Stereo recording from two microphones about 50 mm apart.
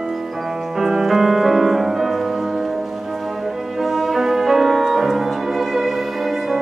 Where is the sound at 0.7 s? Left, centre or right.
Centre.